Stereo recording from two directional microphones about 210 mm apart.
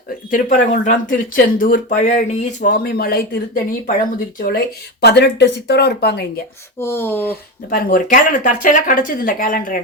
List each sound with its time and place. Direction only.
0.3 s speech: 40° left (ahead or behind)
2.6 s speech: 40° left (ahead or behind)
6.7 s speech: 10° left (ahead or behind)
7.7 s speech: 45° left (ahead or behind)